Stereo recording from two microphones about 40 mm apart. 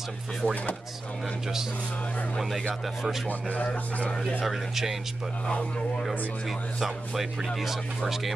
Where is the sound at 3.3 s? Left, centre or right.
Left.